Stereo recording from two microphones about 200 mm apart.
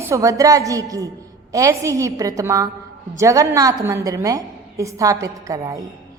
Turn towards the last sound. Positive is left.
turn(degrees=-15)  # may be behind; listen again after turning